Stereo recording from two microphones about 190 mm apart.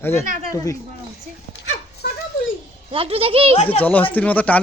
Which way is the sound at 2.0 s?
55° left (ahead or behind).